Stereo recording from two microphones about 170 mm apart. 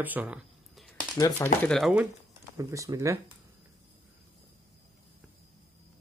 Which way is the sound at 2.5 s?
20° right (ahead or behind).